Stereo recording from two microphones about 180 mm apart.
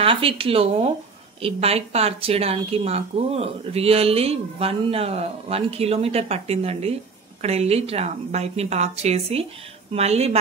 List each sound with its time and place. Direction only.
0.0 s a woman's voice: 30° right (ahead or behind)